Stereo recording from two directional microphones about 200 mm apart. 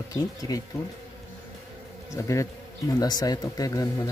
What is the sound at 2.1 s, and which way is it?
Speech, 15° left (ahead or behind).